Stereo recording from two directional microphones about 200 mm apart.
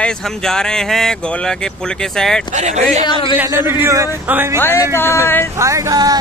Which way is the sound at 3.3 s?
10° right (ahead or behind).